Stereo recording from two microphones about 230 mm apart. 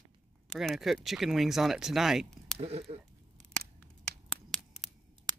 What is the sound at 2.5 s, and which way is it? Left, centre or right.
Speech, right.